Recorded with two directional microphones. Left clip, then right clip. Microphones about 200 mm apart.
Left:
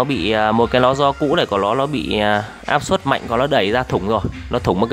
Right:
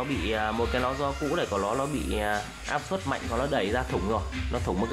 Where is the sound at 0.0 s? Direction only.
55° left (ahead or behind).